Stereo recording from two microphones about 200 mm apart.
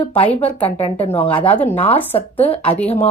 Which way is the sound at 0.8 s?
30° left (ahead or behind).